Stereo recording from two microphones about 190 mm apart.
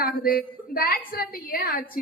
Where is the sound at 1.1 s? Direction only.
50° left (ahead or behind).